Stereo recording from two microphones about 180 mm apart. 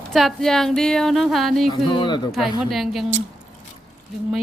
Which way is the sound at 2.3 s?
Centre (ahead or behind).